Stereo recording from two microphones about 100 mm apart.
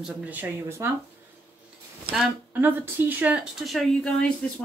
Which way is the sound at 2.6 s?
20° right (ahead or behind).